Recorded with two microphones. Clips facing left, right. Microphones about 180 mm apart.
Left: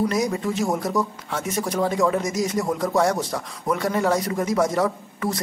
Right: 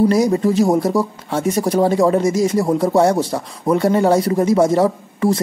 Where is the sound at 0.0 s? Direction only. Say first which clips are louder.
Right 8 dB; 30° right (ahead or behind).